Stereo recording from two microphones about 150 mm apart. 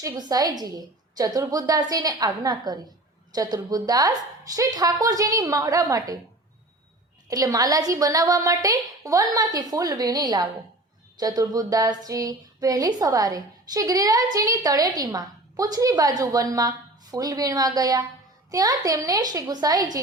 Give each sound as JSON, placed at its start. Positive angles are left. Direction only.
{"t": 0.0, "sound": "a woman's voice", "side_deg": -25}
{"t": 7.3, "sound": "a woman's voice", "side_deg": -25}